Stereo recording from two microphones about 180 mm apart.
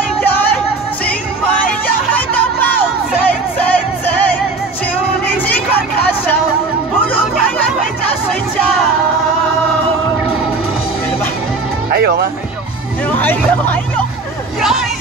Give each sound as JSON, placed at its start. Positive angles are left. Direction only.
{"t": 3.3, "sound": "music", "side_deg": 10}
{"t": 11.9, "sound": "music", "side_deg": -60}
{"t": 13.2, "sound": "hubbub", "side_deg": 10}
{"t": 14.6, "sound": "a sound", "side_deg": 0}